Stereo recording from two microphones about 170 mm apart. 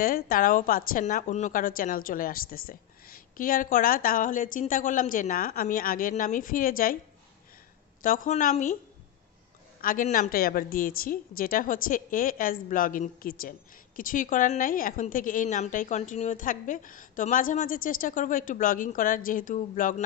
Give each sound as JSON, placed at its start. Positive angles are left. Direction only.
{"t": 0.0, "sound": "a woman's voice", "side_deg": 60}
{"t": 8.0, "sound": "a woman's voice", "side_deg": 55}
{"t": 9.8, "sound": "a woman's voice", "side_deg": 55}